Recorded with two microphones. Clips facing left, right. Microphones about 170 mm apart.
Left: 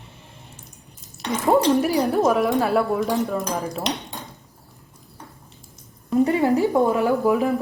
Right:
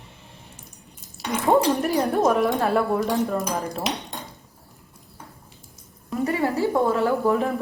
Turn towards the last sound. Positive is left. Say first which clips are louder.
# left 3 dB
turn(degrees=0)  # may be behind; listen again after turning